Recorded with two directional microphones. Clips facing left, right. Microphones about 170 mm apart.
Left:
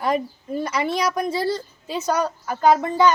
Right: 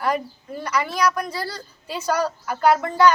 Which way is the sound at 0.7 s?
25° left (ahead or behind).